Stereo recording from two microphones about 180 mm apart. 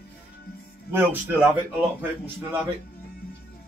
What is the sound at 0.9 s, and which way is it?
Speech, 10° right (ahead or behind).